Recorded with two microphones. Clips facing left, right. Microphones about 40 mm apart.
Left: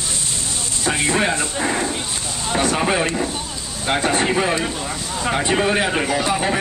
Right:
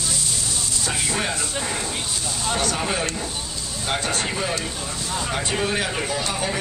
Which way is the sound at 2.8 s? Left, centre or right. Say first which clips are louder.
Left 6 dB; left.